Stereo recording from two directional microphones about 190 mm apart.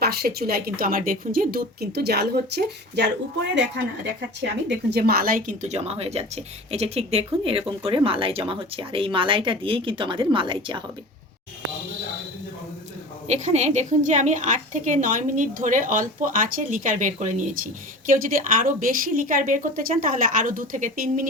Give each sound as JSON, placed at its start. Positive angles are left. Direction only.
{"t": 0.0, "sound": "a woman's voice", "side_deg": -55}
{"t": 4.7, "sound": "speech", "side_deg": -60}
{"t": 13.2, "sound": "a woman's voice", "side_deg": -35}